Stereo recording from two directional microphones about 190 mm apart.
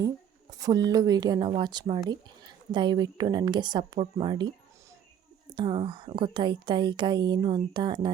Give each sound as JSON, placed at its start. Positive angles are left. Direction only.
{"t": 0.6, "sound": "a woman's voice", "side_deg": -20}
{"t": 5.5, "sound": "a woman's voice", "side_deg": -25}